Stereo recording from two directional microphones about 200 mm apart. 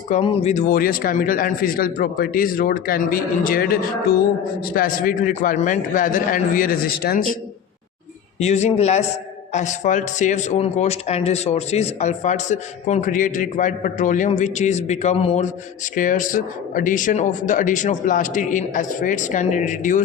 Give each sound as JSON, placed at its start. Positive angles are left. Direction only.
{"t": 0.1, "sound": "a man's voice", "side_deg": 30}
{"t": 8.4, "sound": "speech", "side_deg": 35}